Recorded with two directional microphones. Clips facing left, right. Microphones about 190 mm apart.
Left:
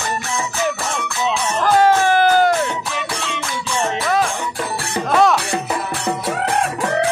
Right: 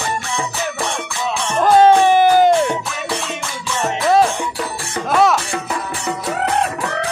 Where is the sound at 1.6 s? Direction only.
20° right (ahead or behind).